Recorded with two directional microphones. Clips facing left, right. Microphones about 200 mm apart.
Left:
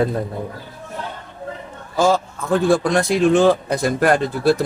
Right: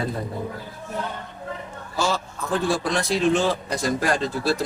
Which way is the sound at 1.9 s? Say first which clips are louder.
Left 8 dB; 55° left (ahead or behind).